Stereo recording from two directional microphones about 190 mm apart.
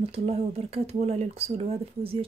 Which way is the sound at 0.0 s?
35° right (ahead or behind).